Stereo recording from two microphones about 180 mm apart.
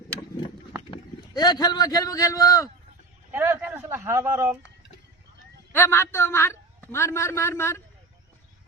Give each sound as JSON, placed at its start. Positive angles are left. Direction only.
{"t": 0.9, "sound": "a man's voice", "side_deg": 25}
{"t": 3.3, "sound": "speech", "side_deg": -10}
{"t": 5.7, "sound": "a man's voice", "side_deg": 15}